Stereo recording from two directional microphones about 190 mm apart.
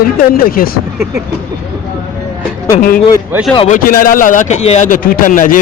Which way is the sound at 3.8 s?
50° left (ahead or behind).